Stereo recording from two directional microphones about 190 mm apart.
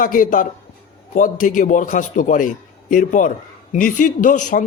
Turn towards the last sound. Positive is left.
turn(degrees=40)  # may be behind; listen again after turning